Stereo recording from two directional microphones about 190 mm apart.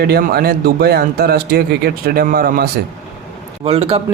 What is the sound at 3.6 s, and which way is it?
Speech, 30° right (ahead or behind).